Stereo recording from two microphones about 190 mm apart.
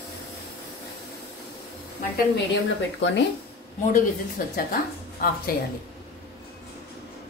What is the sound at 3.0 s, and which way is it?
Speech, 75° left (ahead or behind).